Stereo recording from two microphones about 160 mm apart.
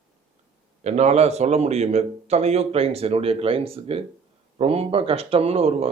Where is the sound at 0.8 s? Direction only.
45° right (ahead or behind).